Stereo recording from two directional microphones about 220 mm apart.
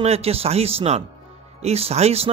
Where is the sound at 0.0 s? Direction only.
30° right (ahead or behind).